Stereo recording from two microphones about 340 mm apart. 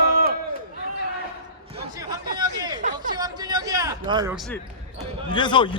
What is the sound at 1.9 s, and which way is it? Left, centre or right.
Chatter, centre.